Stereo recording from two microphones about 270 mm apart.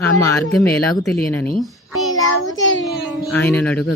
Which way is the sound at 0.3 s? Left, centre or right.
Centre.